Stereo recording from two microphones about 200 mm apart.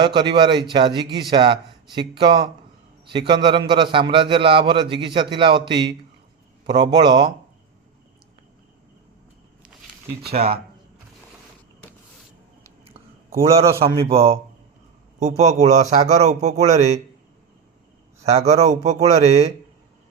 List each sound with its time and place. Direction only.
0.0 s a man's voice: 25° right (ahead or behind)
10.3 s a man's voice: 30° right (ahead or behind)
14.0 s a man's voice: 30° right (ahead or behind)
18.2 s a man's voice: 30° right (ahead or behind)